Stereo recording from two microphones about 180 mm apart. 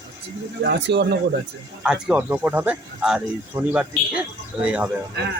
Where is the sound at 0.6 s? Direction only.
70° right (ahead or behind).